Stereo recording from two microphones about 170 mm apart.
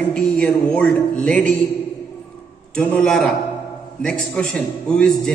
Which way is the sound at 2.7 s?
5° left (ahead or behind).